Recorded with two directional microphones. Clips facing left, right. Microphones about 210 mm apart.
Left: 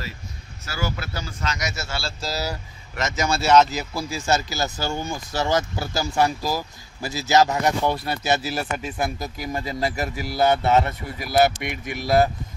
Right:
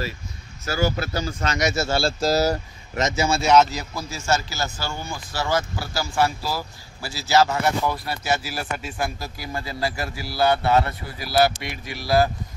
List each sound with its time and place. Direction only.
0.7 s speech: 40° right (ahead or behind)
1.6 s speech: 30° right (ahead or behind)
2.0 s speech: 50° right (ahead or behind)
3.0 s speech: 15° right (ahead or behind)
3.7 s speech: 10° left (ahead or behind)
4.6 s speech: 40° left (ahead or behind)
5.1 s speech: 20° left (ahead or behind)
12.0 s speech: 20° left (ahead or behind)